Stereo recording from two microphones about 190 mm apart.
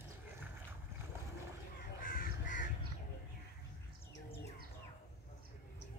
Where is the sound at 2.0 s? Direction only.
45° left (ahead or behind).